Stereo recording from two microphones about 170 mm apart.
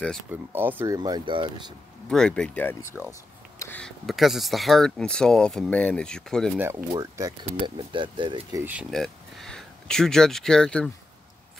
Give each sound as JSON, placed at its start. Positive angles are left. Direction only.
{"t": 0.3, "sound": "speech", "side_deg": -10}
{"t": 2.0, "sound": "speech", "side_deg": 5}
{"t": 6.9, "sound": "speech", "side_deg": -20}
{"t": 8.9, "sound": "speech", "side_deg": 0}